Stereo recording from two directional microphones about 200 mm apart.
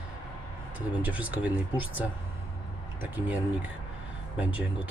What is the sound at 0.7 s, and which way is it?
Speech, 5° right (ahead or behind).